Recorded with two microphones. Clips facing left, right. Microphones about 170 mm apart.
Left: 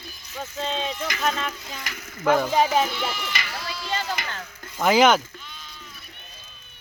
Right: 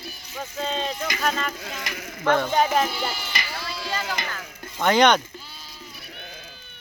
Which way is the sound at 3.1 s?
30° right (ahead or behind).